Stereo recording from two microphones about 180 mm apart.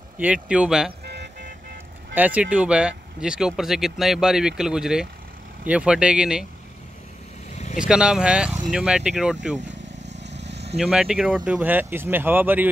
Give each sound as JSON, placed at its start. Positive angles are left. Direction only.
{"t": 0.2, "sound": "speech", "side_deg": -5}
{"t": 1.0, "sound": "music", "side_deg": -65}
{"t": 2.1, "sound": "speech", "side_deg": -10}
{"t": 7.5, "sound": "vehicle", "side_deg": 45}
{"t": 7.9, "sound": "speech", "side_deg": -5}
{"t": 10.0, "sound": "vehicle", "side_deg": -75}
{"t": 10.8, "sound": "speech", "side_deg": -5}